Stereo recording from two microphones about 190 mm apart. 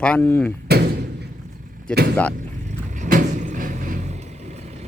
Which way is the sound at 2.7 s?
40° right (ahead or behind).